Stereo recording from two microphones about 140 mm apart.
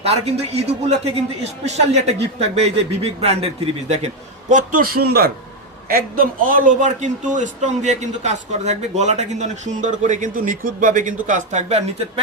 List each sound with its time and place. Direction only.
0.0 s a man's voice: 50° right (ahead or behind); by 11.1 s 70° right (ahead or behind)
11.3 s a man's voice: 60° right (ahead or behind)